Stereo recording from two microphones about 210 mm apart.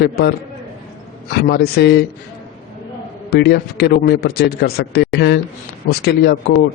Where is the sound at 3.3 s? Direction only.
50° left (ahead or behind).